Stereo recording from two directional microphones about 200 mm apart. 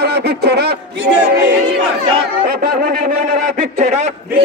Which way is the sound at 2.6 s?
45° right (ahead or behind).